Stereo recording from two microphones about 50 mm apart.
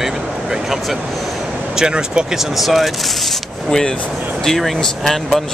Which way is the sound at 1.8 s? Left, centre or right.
Centre.